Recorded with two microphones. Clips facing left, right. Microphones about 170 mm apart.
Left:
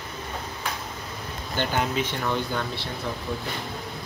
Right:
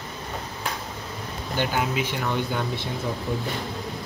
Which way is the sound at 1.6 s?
10° right (ahead or behind).